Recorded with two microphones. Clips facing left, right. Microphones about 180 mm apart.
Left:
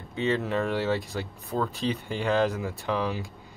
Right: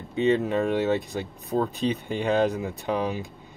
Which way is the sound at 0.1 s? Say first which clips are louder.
Right 4 dB; 20° right (ahead or behind).